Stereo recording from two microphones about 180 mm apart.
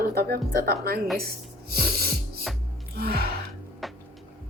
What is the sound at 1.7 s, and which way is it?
Music, 60° right (ahead or behind).